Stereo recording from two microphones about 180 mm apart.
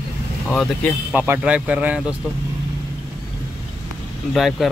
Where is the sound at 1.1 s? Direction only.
10° right (ahead or behind).